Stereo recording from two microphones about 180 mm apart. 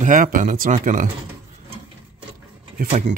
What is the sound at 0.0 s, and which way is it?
Speech, 45° right (ahead or behind).